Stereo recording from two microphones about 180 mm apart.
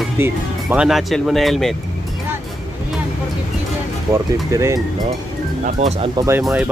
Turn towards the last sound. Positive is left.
turn(degrees=-10)  # may be behind; listen again after turning